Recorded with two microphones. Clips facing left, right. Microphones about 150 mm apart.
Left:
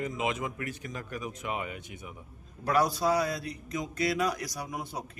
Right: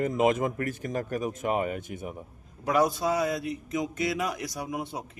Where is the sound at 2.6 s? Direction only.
20° right (ahead or behind).